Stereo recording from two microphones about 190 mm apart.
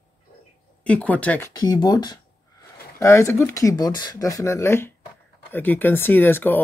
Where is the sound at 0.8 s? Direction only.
5° left (ahead or behind).